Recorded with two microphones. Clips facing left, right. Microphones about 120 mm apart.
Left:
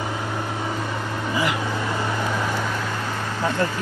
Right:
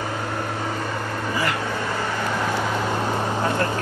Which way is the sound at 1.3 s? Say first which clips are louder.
Left 2 dB; 15° left (ahead or behind).